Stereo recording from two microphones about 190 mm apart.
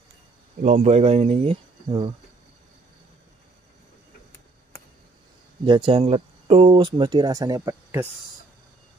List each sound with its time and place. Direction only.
0.6 s speech: 35° right (ahead or behind)
5.7 s speech: 25° right (ahead or behind)